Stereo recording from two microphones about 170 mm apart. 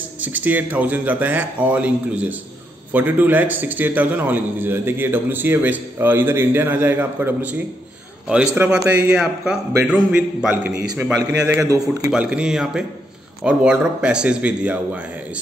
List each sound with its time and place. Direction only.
0.2 s a man's voice: 10° right (ahead or behind)
8.8 s a man's voice: 5° right (ahead or behind)
11.3 s a man's voice: 20° right (ahead or behind)
12.1 s a man's voice: 5° right (ahead or behind)